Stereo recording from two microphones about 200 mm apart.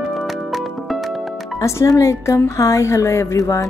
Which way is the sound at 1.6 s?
15° left (ahead or behind).